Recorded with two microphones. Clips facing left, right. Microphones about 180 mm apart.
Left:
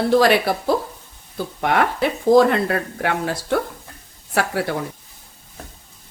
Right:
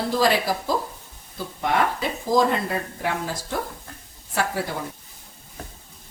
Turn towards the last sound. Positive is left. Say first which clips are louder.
# left 4 dB
turn(degrees=70)  # may be behind; listen again after turning